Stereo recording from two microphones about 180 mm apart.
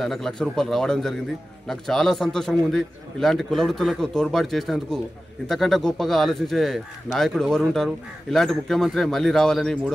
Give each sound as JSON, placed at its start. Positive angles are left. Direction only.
{"t": 0.0, "sound": "a man's voice", "side_deg": 0}